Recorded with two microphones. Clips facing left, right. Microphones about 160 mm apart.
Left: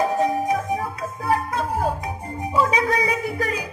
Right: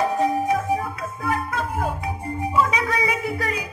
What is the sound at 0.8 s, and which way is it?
Music, 35° left (ahead or behind).